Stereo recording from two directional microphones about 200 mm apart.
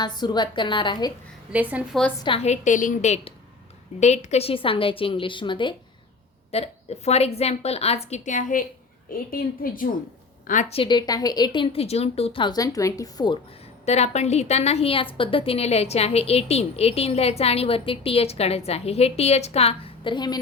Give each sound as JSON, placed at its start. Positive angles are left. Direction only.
{"t": 0.0, "sound": "a woman's voice", "side_deg": 20}
{"t": 1.5, "sound": "a woman's voice", "side_deg": -5}
{"t": 2.2, "sound": "a woman's voice", "side_deg": 30}
{"t": 13.8, "sound": "a woman's voice", "side_deg": 35}